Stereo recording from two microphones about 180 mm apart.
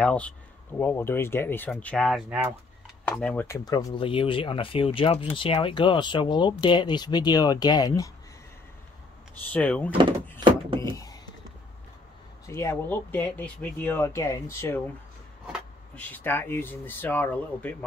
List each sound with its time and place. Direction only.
0.0 s speech: 5° left (ahead or behind)
3.4 s speech: 20° left (ahead or behind)
9.5 s speech: 10° left (ahead or behind)
10.4 s a sound: 25° right (ahead or behind)
10.9 s typing: 20° left (ahead or behind)
12.4 s speech: 15° left (ahead or behind)
15.9 s speech: 10° left (ahead or behind)